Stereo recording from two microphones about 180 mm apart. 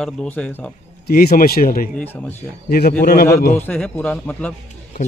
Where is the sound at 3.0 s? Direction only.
55° left (ahead or behind).